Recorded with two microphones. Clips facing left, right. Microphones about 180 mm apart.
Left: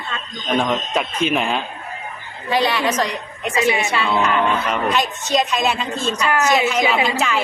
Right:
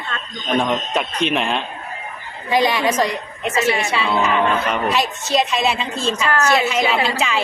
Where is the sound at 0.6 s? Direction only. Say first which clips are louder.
Even; centre (ahead or behind).